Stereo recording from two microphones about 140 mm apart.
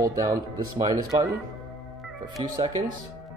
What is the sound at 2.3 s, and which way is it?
Speech, 25° right (ahead or behind).